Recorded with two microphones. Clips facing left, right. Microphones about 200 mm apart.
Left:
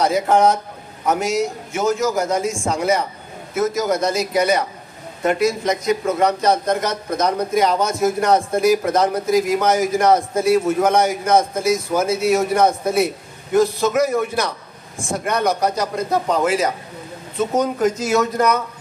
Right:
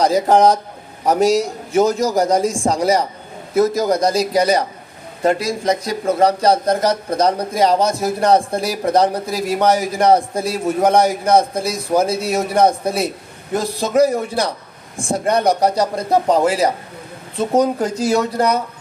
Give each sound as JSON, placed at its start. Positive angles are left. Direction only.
{"t": 0.0, "sound": "speech", "side_deg": -35}